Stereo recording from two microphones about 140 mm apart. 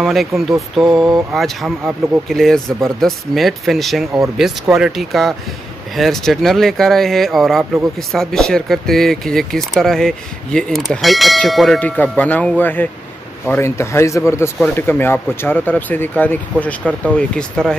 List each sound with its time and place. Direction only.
0.0 s speech: centre (ahead or behind)